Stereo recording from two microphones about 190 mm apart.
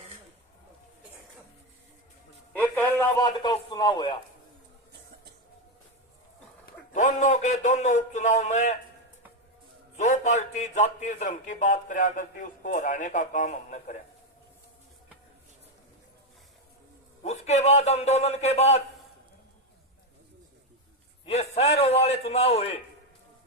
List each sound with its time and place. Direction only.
2.6 s a sound: 10° left (ahead or behind)
6.9 s a man's voice: 40° left (ahead or behind)
10.0 s a man's voice: 40° left (ahead or behind)
17.2 s a man's voice: 35° left (ahead or behind)
21.2 s a man's voice: 35° left (ahead or behind)